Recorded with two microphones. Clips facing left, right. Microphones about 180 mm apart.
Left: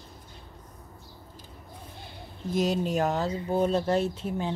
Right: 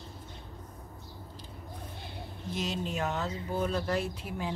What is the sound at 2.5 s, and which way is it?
Speech, 40° left (ahead or behind).